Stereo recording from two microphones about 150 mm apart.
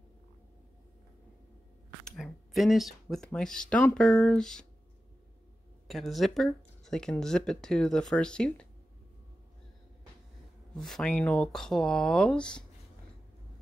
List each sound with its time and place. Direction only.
2.0 s speech: centre (ahead or behind)
5.9 s speech: centre (ahead or behind)
10.7 s speech: 5° left (ahead or behind)